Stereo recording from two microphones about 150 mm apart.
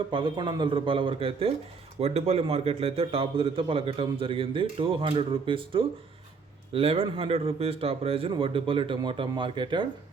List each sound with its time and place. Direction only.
0.1 s a man's voice: 35° right (ahead or behind)